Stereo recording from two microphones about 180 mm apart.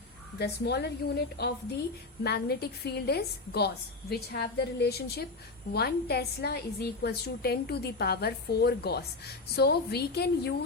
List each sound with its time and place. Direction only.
0.3 s a woman's voice: 65° left (ahead or behind)